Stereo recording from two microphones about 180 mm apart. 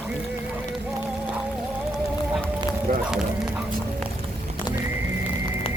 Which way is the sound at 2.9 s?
50° right (ahead or behind).